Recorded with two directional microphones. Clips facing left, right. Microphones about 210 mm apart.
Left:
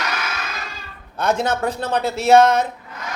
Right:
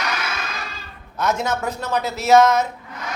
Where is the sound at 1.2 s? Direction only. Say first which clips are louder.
Left 2 dB; 30° left (ahead or behind).